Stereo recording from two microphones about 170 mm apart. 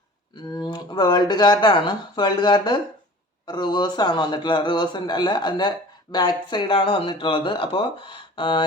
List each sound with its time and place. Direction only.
0.5 s speech: 25° left (ahead or behind)